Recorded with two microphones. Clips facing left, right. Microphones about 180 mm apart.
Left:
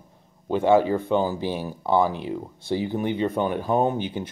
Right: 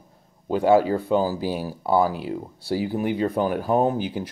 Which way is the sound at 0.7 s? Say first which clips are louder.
Even; 20° left (ahead or behind).